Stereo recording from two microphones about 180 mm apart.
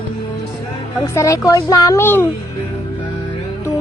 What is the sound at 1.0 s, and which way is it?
Speech, 15° left (ahead or behind).